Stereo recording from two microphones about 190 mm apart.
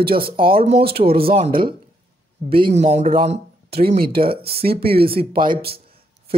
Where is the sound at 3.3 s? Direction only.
55° right (ahead or behind).